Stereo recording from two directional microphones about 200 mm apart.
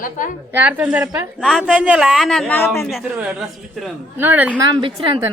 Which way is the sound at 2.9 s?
5° right (ahead or behind).